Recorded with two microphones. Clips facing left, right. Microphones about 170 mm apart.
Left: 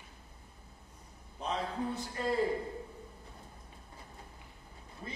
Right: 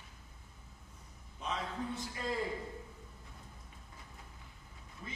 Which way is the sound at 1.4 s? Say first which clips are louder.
Left 4 dB; 35° left (ahead or behind).